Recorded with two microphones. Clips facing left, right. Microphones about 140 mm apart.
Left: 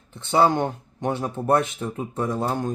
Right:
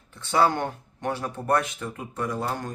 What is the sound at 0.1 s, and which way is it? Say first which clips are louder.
Speech: left 3 dB; 25° left (ahead or behind).